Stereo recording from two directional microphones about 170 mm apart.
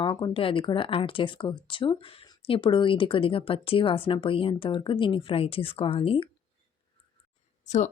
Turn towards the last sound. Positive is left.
turn(degrees=40)  # may be behind; listen again after turning